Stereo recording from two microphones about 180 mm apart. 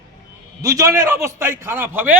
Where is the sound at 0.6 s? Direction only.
20° right (ahead or behind).